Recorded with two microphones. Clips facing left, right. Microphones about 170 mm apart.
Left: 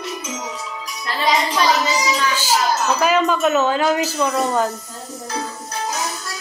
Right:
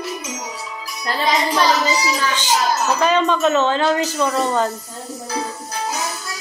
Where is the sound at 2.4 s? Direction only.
5° left (ahead or behind).